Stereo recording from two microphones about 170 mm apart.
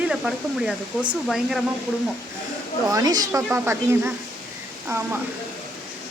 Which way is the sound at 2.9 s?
20° right (ahead or behind).